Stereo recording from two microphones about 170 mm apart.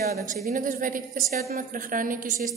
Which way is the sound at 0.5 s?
55° right (ahead or behind).